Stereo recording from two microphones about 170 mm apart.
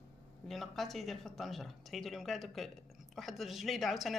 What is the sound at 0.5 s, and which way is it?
Speech, centre (ahead or behind).